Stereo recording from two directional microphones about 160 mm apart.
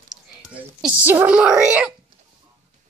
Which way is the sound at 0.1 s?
5° right (ahead or behind).